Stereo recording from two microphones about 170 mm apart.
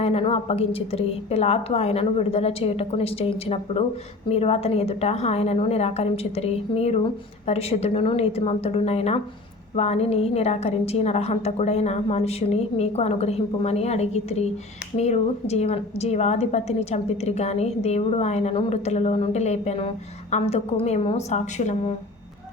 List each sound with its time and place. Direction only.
0.0 s a woman's voice: 35° left (ahead or behind)